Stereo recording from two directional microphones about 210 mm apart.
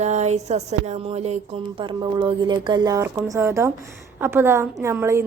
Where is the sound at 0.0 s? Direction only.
35° right (ahead or behind).